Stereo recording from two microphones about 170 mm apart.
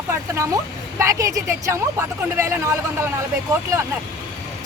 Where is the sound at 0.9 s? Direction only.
20° right (ahead or behind).